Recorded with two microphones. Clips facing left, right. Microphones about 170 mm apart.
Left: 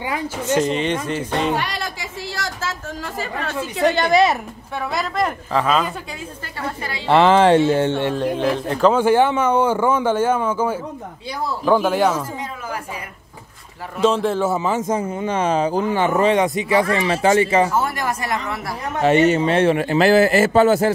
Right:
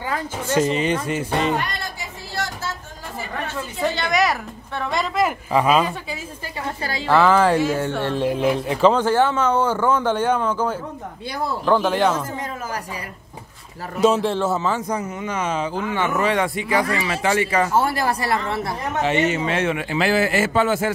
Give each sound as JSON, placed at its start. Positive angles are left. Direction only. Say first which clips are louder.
{"t": 0.0, "sound": "a man's voice", "louder": "left 2 dB", "side_deg": 15}
{"t": 0.6, "sound": "speech", "louder": "right 1 dB", "side_deg": -5}
{"t": 1.6, "sound": "a sound", "louder": "left 3 dB", "side_deg": 90}
{"t": 3.2, "sound": "chatter", "louder": "left 2 dB", "side_deg": 85}
{"t": 4.1, "sound": "speech", "louder": "left 4 dB", "side_deg": 25}
{"t": 4.7, "sound": "speech", "louder": "even", "side_deg": 0}
{"t": 7.1, "sound": "speech", "louder": "left 3 dB", "side_deg": 25}
{"t": 8.1, "sound": "speech", "louder": "even", "side_deg": -5}
{"t": 8.9, "sound": "a man's voice", "louder": "left 3 dB", "side_deg": 10}
{"t": 14.0, "sound": "speech", "louder": "even", "side_deg": -5}
{"t": 14.9, "sound": "speech", "louder": "left 4 dB", "side_deg": 30}
{"t": 17.7, "sound": "speech", "louder": "right 2 dB", "side_deg": -30}
{"t": 19.0, "sound": "speech", "louder": "left 7 dB", "side_deg": 40}